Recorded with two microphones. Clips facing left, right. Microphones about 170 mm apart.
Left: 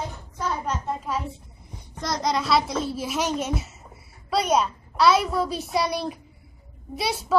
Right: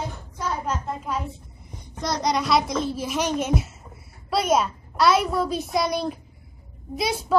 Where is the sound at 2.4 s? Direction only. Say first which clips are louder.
Right 1 dB; centre (ahead or behind).